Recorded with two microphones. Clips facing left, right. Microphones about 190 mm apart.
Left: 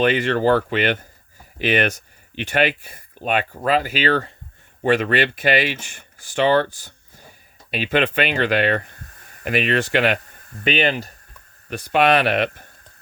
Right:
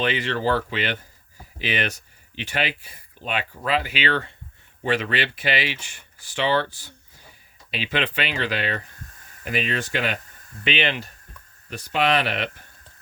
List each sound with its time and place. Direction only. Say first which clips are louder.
0.0 s speech: left 6 dB; 50° left (ahead or behind)
4.8 s speech: left 6 dB; 50° left (ahead or behind); by 10.2 s 70° left (ahead or behind)
10.6 s speech: left 5 dB; 45° left (ahead or behind)
11.7 s speech: left 5 dB; 60° left (ahead or behind)